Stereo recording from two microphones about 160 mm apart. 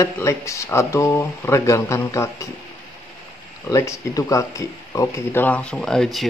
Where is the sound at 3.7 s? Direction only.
20° left (ahead or behind).